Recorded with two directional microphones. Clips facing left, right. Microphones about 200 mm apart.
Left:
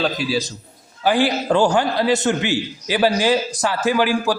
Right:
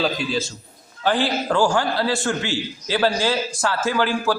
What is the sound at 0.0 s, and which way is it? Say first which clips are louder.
Speech: left 1 dB; 5° left (ahead or behind).